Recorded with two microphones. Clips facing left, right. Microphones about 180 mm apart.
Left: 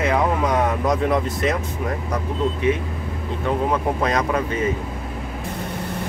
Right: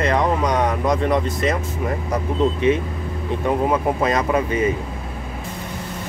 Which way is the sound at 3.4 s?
5° right (ahead or behind).